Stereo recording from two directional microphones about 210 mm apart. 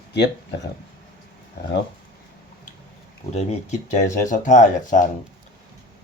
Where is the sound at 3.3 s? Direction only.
35° left (ahead or behind).